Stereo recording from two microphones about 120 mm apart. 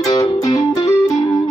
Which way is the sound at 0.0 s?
30° left (ahead or behind).